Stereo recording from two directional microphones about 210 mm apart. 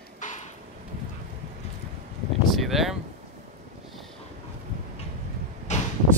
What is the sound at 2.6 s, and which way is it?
Speech, centre (ahead or behind).